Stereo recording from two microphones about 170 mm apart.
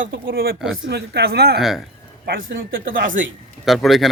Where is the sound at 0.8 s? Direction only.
75° right (ahead or behind); by 3.2 s 55° right (ahead or behind).